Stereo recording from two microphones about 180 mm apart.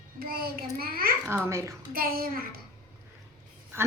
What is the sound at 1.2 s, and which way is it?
Speech, 15° right (ahead or behind).